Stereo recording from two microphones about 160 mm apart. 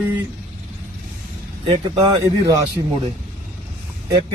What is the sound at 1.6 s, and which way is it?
Speech, 25° right (ahead or behind).